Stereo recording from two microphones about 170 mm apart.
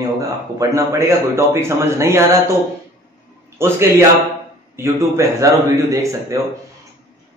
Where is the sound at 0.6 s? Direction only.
15° right (ahead or behind).